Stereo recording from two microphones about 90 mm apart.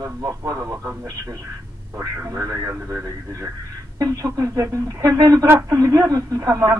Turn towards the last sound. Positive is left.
turn(degrees=-35)  # may be behind; listen again after turning